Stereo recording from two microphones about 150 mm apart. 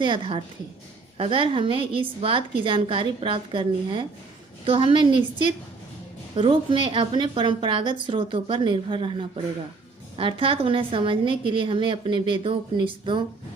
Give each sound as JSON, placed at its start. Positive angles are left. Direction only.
{"t": 0.0, "sound": "a woman's voice", "side_deg": -35}